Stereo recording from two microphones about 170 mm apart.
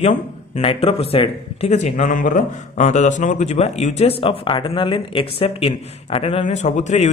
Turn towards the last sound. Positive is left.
turn(degrees=40)  # may be behind; listen again after turning